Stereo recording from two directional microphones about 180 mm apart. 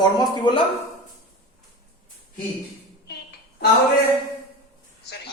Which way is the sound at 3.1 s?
65° left (ahead or behind).